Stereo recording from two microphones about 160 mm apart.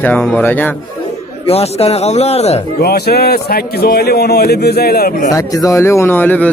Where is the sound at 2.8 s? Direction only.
75° left (ahead or behind).